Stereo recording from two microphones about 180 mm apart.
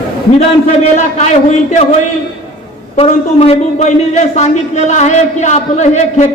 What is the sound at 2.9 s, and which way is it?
A man's voice, 35° left (ahead or behind).